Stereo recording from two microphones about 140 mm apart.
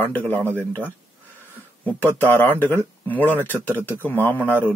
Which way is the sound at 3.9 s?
15° left (ahead or behind).